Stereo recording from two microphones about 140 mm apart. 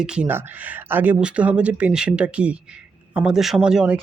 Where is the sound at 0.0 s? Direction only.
5° right (ahead or behind).